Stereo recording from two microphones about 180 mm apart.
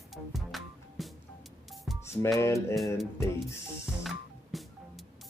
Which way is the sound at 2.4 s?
15° left (ahead or behind).